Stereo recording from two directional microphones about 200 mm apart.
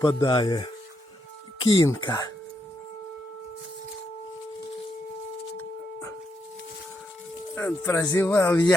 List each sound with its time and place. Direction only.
0.0 s speech: 20° left (ahead or behind)
5.5 s a sound: 15° left (ahead or behind)
7.5 s speech: 10° left (ahead or behind)